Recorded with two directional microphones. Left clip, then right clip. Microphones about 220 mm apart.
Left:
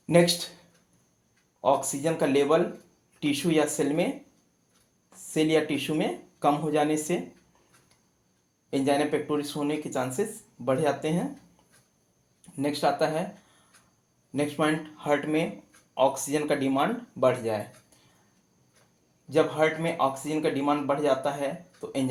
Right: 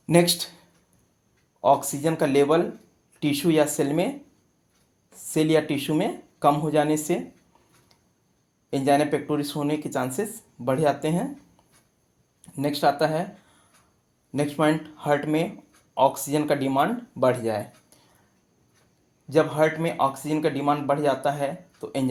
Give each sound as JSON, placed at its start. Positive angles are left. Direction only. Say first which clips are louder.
{"t": 0.0, "sound": "speech", "louder": "right 1 dB", "side_deg": -40}
{"t": 1.6, "sound": "speech", "louder": "right 4 dB", "side_deg": -45}
{"t": 5.3, "sound": "speech", "louder": "right 3 dB", "side_deg": -45}
{"t": 8.7, "sound": "speech", "louder": "right 4 dB", "side_deg": -45}
{"t": 12.5, "sound": "speech", "louder": "right 3 dB", "side_deg": -45}
{"t": 14.3, "sound": "speech", "louder": "right 3 dB", "side_deg": -45}
{"t": 19.3, "sound": "speech", "louder": "right 3 dB", "side_deg": -45}